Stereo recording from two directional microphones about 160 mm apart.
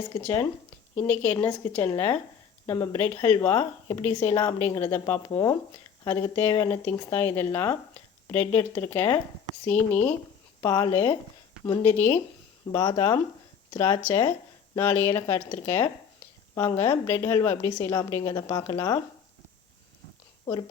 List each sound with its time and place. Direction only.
0.1 s speech: 15° left (ahead or behind)
10.6 s speech: 25° left (ahead or behind)
12.7 s a woman's voice: 25° left (ahead or behind)
20.4 s speech: 30° left (ahead or behind)